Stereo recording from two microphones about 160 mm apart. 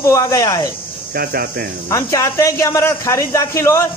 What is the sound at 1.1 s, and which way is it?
Speech, 75° right (ahead or behind).